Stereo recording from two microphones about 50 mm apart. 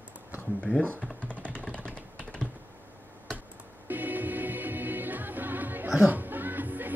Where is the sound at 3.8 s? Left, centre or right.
Right.